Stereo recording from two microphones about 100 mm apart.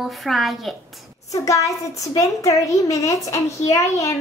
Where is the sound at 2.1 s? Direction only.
35° left (ahead or behind).